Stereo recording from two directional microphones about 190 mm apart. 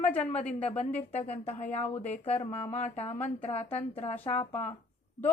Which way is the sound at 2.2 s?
30° left (ahead or behind).